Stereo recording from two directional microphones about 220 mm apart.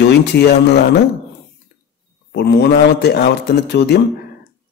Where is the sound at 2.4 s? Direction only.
50° left (ahead or behind).